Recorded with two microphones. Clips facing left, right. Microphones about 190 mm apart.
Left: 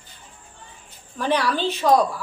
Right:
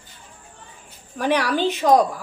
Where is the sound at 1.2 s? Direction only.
10° right (ahead or behind).